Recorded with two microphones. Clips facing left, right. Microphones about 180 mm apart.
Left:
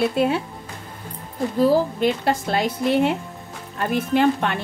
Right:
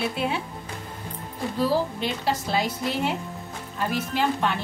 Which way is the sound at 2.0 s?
55° left (ahead or behind).